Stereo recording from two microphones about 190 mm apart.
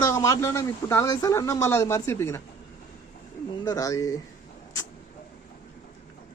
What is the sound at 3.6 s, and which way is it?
Speech, 15° left (ahead or behind).